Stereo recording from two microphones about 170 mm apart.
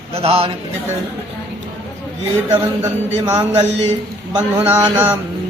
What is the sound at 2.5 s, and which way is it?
Speech, 15° right (ahead or behind).